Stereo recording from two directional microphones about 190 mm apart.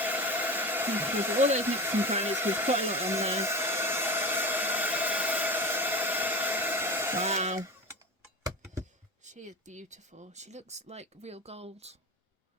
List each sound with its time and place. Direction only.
0.0 s hair dryer: 10° right (ahead or behind)
1.6 s speech: 10° right (ahead or behind)
3.4 s hair dryer: 10° right (ahead or behind)
7.2 s speech: 35° right (ahead or behind)
9.2 s speech: 40° right (ahead or behind)